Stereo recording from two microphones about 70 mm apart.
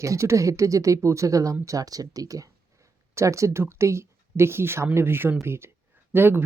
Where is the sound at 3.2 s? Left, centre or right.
Right.